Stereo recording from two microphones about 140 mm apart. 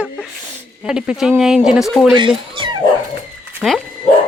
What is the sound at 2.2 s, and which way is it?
Speech, 35° right (ahead or behind).